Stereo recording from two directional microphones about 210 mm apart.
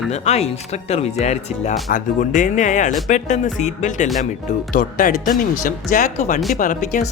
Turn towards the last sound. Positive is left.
turn(degrees=35)  # may be behind; listen again after turning